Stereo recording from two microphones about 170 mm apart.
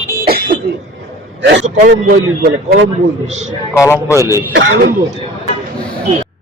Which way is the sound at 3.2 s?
40° right (ahead or behind).